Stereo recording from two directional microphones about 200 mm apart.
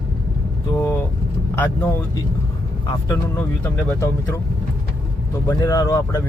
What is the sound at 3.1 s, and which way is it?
Speech, 10° left (ahead or behind).